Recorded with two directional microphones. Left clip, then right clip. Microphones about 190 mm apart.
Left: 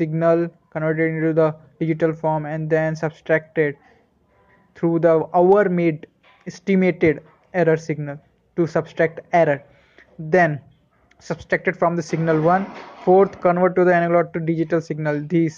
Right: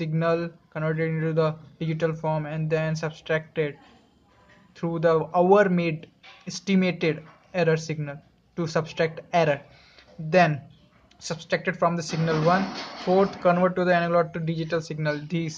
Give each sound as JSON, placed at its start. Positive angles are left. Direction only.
{"t": 0.2, "sound": "speech", "side_deg": 25}
{"t": 4.7, "sound": "speech", "side_deg": 20}
{"t": 11.1, "sound": "speech", "side_deg": 25}